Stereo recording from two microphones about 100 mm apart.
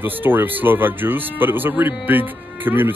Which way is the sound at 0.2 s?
20° right (ahead or behind).